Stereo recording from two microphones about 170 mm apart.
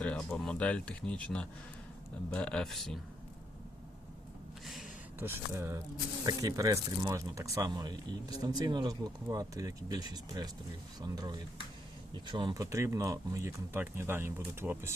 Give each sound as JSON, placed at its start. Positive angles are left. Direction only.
{"t": 0.0, "sound": "speech", "side_deg": 5}
{"t": 4.6, "sound": "a sound", "side_deg": 0}
{"t": 5.2, "sound": "speech", "side_deg": -15}
{"t": 12.7, "sound": "speech", "side_deg": -15}